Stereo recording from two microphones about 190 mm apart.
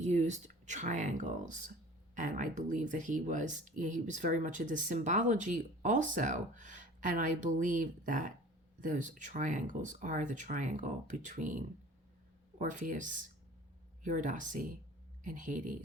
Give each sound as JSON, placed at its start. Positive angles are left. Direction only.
{"t": 0.0, "sound": "speech", "side_deg": -40}